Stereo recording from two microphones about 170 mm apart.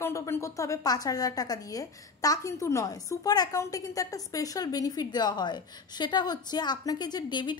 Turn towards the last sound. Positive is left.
turn(degrees=25)  # may be behind; listen again after turning